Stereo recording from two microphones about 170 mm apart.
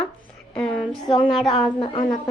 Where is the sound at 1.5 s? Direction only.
30° left (ahead or behind).